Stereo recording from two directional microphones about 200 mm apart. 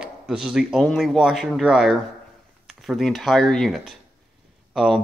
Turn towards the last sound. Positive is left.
turn(degrees=0)  # may be behind; listen again after turning